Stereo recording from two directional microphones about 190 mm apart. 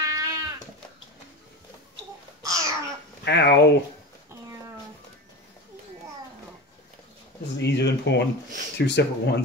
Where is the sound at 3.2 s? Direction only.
60° left (ahead or behind).